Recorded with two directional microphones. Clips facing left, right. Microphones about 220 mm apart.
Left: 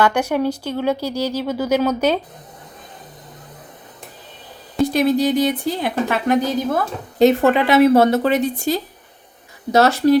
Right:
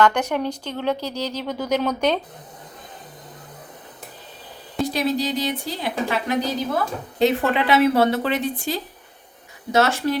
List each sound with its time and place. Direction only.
0.0 s speech: 10° left (ahead or behind)
4.9 s a woman's voice: 50° left (ahead or behind)